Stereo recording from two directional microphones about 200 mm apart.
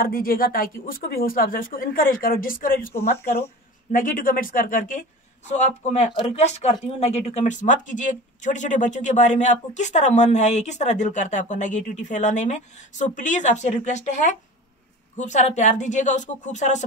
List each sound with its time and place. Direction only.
0.0 s speech: 45° left (ahead or behind)
3.9 s speech: 45° left (ahead or behind)